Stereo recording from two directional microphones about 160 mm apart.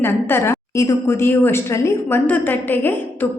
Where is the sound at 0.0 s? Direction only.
15° left (ahead or behind).